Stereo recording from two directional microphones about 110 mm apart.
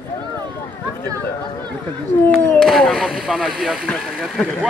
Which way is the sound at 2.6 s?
5° left (ahead or behind).